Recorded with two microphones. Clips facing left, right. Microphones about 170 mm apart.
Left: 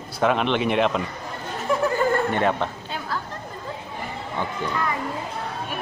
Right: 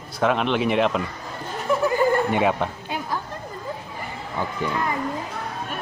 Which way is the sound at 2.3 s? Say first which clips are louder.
Right 1 dB; 10° right (ahead or behind).